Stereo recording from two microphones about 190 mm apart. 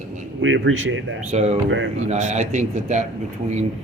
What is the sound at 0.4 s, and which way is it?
Speech, 85° right.